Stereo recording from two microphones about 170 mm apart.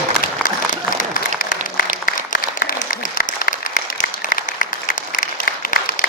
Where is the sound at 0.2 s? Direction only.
50° left (ahead or behind).